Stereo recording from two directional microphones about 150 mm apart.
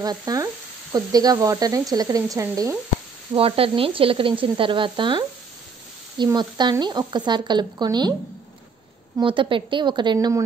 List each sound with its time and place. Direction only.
0.0 s speech: 25° right (ahead or behind)
3.3 s speech: 40° right (ahead or behind)
9.2 s speech: 35° right (ahead or behind)